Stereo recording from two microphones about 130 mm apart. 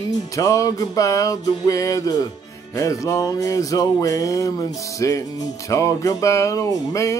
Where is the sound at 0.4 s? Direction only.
25° left (ahead or behind).